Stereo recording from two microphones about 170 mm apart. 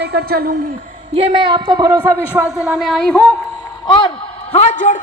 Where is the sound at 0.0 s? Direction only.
70° right (ahead or behind).